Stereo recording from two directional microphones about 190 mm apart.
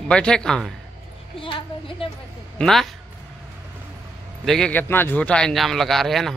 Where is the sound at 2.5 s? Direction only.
Centre (ahead or behind).